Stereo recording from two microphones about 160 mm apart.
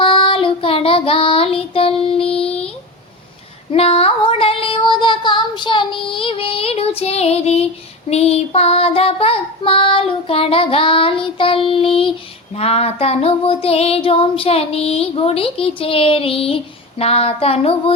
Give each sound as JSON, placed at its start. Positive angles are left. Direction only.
{"t": 0.0, "sound": "child singing", "side_deg": 35}
{"t": 3.7, "sound": "child singing", "side_deg": 35}